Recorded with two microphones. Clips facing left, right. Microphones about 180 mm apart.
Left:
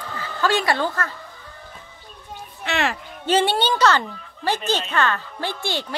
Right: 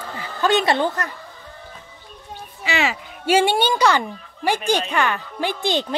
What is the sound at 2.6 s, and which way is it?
Speech, centre (ahead or behind).